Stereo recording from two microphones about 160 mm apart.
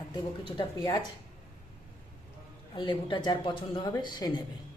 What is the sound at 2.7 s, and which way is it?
A woman's voice, 30° left (ahead or behind).